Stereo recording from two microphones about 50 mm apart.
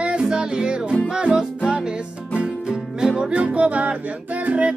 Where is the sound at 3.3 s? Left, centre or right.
Right.